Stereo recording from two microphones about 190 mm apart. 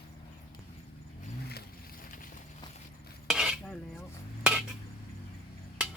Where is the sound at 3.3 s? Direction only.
5° right (ahead or behind).